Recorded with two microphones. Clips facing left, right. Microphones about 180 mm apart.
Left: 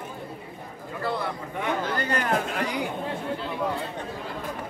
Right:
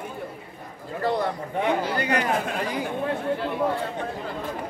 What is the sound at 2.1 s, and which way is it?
Speech, 10° right (ahead or behind).